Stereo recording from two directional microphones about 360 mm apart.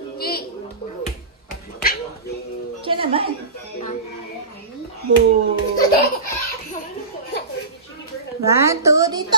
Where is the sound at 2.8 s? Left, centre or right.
Centre.